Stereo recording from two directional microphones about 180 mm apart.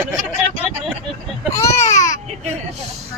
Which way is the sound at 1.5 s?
15° left (ahead or behind).